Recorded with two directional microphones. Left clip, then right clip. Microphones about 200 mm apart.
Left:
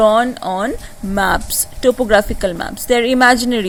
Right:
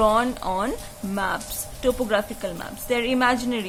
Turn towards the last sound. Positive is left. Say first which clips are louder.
# left 10 dB
turn(degrees=30)  # may be behind; listen again after turning